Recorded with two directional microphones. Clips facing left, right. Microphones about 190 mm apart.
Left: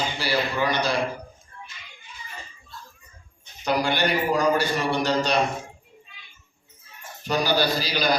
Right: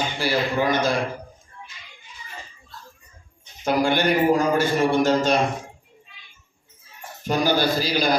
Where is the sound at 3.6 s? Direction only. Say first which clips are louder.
Right 3 dB; 50° right (ahead or behind).